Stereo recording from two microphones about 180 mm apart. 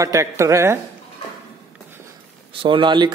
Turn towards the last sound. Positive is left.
turn(degrees=-25)  # may be behind; listen again after turning